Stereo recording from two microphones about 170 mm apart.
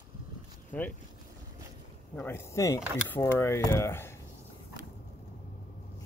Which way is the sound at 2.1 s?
15° left (ahead or behind).